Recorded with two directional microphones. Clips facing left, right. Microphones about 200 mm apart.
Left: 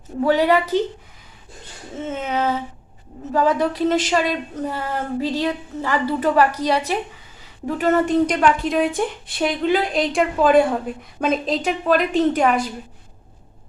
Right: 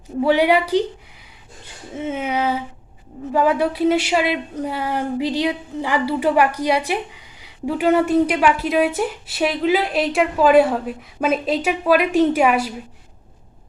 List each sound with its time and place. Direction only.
0.2 s speech: 10° right (ahead or behind)
2.0 s speech: 10° right (ahead or behind)